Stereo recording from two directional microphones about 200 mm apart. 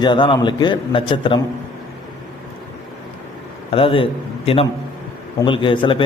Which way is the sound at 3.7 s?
25° left (ahead or behind).